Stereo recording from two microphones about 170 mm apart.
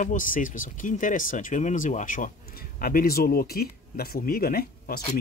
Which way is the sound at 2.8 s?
60° left (ahead or behind).